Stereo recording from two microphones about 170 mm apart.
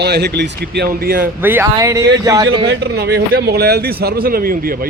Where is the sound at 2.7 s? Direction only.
70° right (ahead or behind).